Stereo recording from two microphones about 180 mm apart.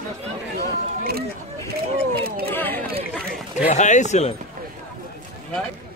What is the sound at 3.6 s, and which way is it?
Speech, 40° left (ahead or behind).